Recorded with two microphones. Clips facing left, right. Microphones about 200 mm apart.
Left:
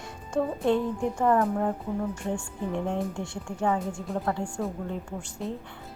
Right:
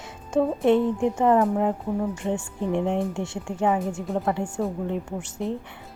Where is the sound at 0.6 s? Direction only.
20° right (ahead or behind).